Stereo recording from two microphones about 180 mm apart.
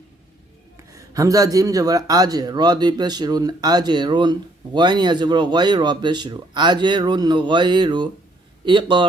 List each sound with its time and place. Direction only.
0.9 s a man's voice: 20° right (ahead or behind)